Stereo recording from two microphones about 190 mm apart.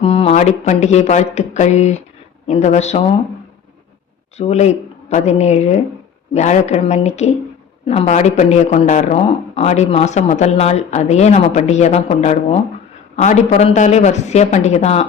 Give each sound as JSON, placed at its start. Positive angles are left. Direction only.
{"t": 0.0, "sound": "speech", "side_deg": 30}
{"t": 4.4, "sound": "speech", "side_deg": 35}